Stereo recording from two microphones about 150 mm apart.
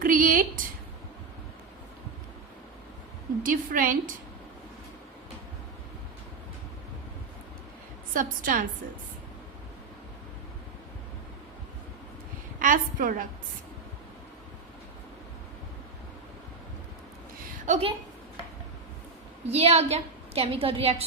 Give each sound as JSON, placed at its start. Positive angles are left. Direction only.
{"t": 0.0, "sound": "a sound", "side_deg": -65}
{"t": 3.4, "sound": "a woman's voice", "side_deg": -65}
{"t": 8.1, "sound": "a woman's voice", "side_deg": -65}
{"t": 12.5, "sound": "a woman's voice", "side_deg": -60}
{"t": 17.7, "sound": "a woman's voice", "side_deg": -40}
{"t": 19.5, "sound": "a woman's voice", "side_deg": -45}